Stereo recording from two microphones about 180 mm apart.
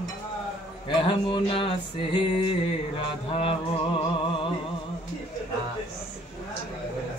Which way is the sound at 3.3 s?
30° left (ahead or behind).